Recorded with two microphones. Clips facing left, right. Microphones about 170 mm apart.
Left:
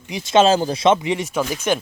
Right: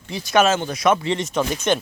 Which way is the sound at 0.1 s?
25° left (ahead or behind).